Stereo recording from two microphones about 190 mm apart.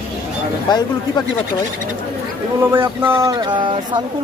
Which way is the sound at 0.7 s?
20° left (ahead or behind).